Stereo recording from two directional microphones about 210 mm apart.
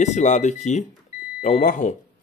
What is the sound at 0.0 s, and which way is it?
Speech, 35° left (ahead or behind).